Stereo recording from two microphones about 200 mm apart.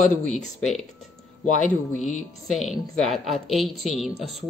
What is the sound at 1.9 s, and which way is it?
Speech, 35° left (ahead or behind).